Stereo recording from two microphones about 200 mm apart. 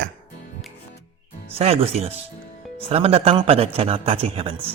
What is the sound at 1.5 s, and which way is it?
A man's voice, 30° right (ahead or behind).